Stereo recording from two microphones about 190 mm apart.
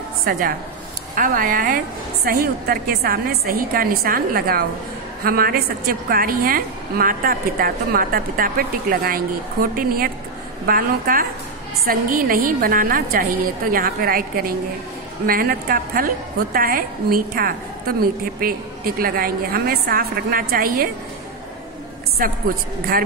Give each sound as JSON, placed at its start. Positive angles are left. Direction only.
{"t": 0.2, "sound": "a woman's voice", "side_deg": -50}
{"t": 22.2, "sound": "a woman's voice", "side_deg": -50}